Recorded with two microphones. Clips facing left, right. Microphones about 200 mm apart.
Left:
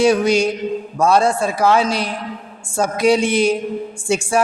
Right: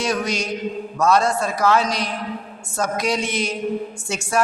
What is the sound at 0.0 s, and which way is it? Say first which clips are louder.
A man's voice: left 9 dB; 30° left (ahead or behind).